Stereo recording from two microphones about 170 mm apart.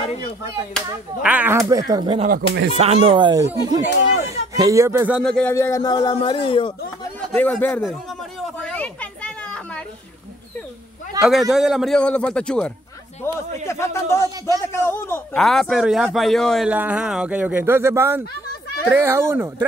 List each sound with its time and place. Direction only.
1.2 s speech: 10° right (ahead or behind)
1.7 s speech: 20° right (ahead or behind)
2.2 s speech: 80° right
2.8 s speech: 40° right (ahead or behind); by 5.2 s 15° right (ahead or behind)
5.2 s speech: 5° left (ahead or behind)
5.5 s a man's voice: 15° left (ahead or behind); by 6.7 s 30° left (ahead or behind)
7.3 s speech: 10° left (ahead or behind)
8.4 s a sound: 5° left (ahead or behind)
11.1 s speech: centre (ahead or behind)
15.3 s speech: centre (ahead or behind); by 19.5 s 15° right (ahead or behind)